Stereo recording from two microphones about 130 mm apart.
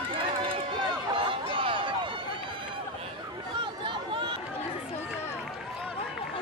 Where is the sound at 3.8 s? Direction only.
40° right (ahead or behind).